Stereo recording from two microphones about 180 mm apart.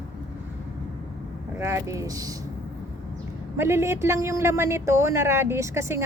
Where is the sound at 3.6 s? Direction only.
15° right (ahead or behind).